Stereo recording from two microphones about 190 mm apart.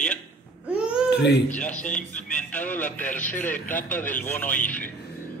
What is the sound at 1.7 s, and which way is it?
Speech, 40° left (ahead or behind).